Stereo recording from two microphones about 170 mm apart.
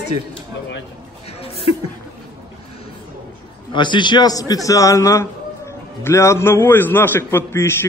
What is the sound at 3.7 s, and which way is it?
A man's voice, 30° left (ahead or behind).